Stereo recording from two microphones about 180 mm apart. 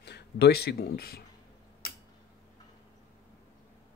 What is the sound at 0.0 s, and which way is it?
Speech, 65° left (ahead or behind).